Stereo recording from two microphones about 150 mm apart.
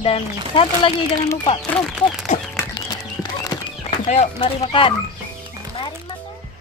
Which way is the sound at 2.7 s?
25° left (ahead or behind).